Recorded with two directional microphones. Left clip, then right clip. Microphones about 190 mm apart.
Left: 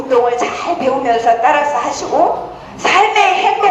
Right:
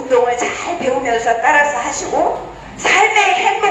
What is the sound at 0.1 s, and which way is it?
Speech, 35° left (ahead or behind).